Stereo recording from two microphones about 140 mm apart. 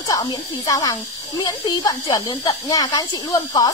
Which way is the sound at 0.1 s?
25° left (ahead or behind).